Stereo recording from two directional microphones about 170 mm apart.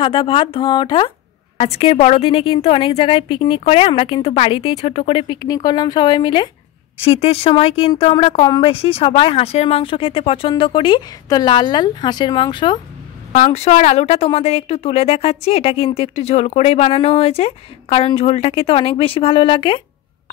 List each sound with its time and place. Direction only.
0.0 s a woman's voice: 30° left (ahead or behind)
13.3 s a woman's voice: 40° left (ahead or behind)